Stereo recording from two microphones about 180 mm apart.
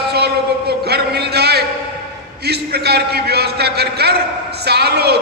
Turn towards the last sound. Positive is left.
turn(degrees=-65)  # may be behind; listen again after turning